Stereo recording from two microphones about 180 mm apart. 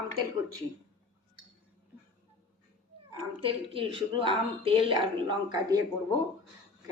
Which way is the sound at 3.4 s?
30° right (ahead or behind).